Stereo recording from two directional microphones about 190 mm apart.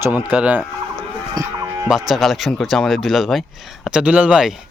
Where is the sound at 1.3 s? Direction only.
15° right (ahead or behind).